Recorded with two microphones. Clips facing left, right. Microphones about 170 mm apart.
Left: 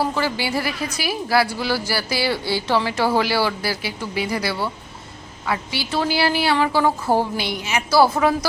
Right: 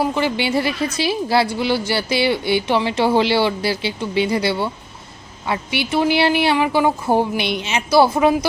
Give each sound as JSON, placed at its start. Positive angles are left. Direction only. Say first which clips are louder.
{"t": 0.0, "sound": "speech", "louder": "right 3 dB", "side_deg": -20}